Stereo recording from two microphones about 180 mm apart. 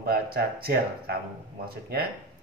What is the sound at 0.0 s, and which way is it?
Speech, 60° right (ahead or behind).